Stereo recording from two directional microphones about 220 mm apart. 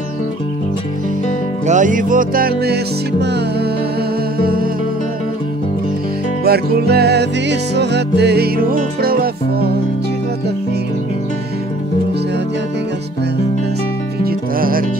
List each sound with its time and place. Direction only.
1.7 s music: 35° right (ahead or behind)
6.4 s music: 45° right (ahead or behind)
14.2 s music: 40° right (ahead or behind)